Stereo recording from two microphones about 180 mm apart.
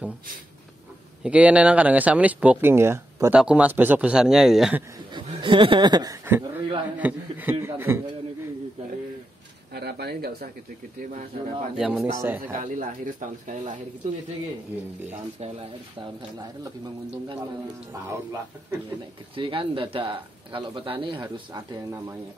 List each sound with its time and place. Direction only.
1.2 s speech: 5° right (ahead or behind)
5.1 s speech: 25° right (ahead or behind)
6.2 s a sound: 10° right (ahead or behind)
7.0 s speech: 10° right (ahead or behind)
9.8 s speech: 65° right (ahead or behind)
11.7 s speech: 5° right (ahead or behind)
12.4 s speech: 50° right (ahead or behind)
19.3 s speech: 30° right (ahead or behind)